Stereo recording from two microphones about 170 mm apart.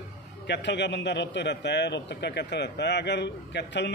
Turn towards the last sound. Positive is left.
turn(degrees=90)